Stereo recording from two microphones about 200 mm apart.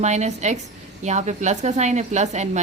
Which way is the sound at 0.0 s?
35° right (ahead or behind).